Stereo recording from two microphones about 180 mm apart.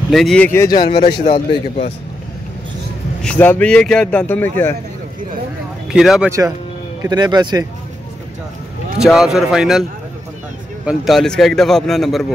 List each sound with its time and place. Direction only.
0.1 s speech: centre (ahead or behind)
0.7 s a man's voice: 25° left (ahead or behind)
3.2 s speech: 5° left (ahead or behind)
5.9 s speech: centre (ahead or behind)
7.0 s speech: 20° right (ahead or behind)
8.9 s speech: centre (ahead or behind)
10.9 s speech: centre (ahead or behind)